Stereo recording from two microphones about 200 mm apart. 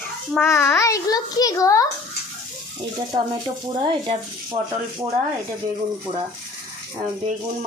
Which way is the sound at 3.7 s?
25° right (ahead or behind).